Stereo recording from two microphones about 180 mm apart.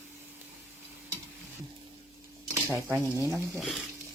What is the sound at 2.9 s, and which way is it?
Speech, 15° right (ahead or behind).